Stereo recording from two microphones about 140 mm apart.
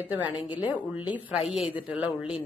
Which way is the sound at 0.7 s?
10° right (ahead or behind).